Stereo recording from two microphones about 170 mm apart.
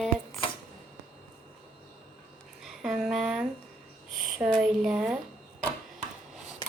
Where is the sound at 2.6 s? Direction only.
Centre (ahead or behind).